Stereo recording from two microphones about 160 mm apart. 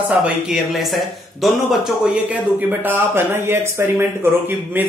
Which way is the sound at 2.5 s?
10° right (ahead or behind).